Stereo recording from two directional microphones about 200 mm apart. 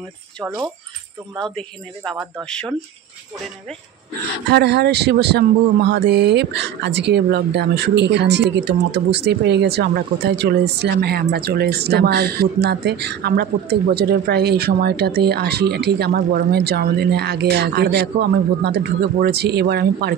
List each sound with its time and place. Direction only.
2.4 s speech: 5° left (ahead or behind)
4.5 s speech: 55° right (ahead or behind)